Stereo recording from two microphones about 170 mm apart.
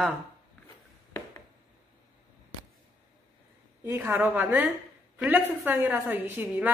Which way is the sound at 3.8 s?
15° right (ahead or behind).